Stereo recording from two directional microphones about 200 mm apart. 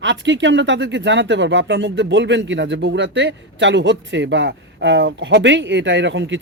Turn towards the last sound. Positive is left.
turn(degrees=-65)  # may be behind; listen again after turning